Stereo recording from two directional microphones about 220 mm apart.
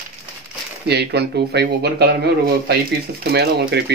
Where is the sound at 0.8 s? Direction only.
50° right (ahead or behind).